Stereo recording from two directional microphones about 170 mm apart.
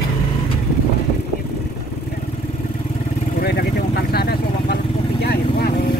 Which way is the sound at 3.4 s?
70° left (ahead or behind).